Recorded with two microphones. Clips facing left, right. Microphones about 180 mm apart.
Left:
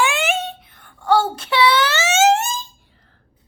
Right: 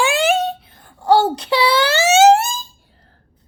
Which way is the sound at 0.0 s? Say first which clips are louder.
Right 4 dB; 35° right (ahead or behind).